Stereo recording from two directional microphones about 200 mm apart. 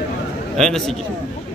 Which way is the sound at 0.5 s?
Centre (ahead or behind).